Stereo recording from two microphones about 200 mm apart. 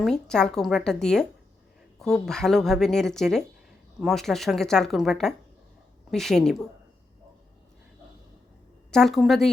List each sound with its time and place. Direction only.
0.0 s a woman's voice: 5° left (ahead or behind)
8.9 s a woman's voice: centre (ahead or behind)